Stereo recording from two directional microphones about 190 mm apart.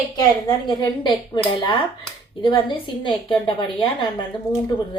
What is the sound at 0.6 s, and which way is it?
A woman's voice, 25° left (ahead or behind).